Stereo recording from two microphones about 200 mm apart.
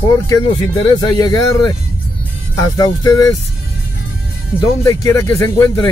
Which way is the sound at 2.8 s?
20° left (ahead or behind).